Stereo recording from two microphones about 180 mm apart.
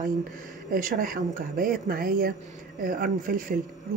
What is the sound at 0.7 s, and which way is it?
Speech, 50° right (ahead or behind).